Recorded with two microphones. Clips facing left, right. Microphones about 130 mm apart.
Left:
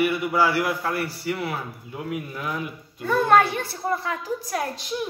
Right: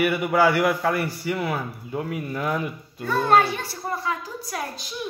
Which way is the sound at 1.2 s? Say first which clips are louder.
Right 2 dB; 50° right (ahead or behind).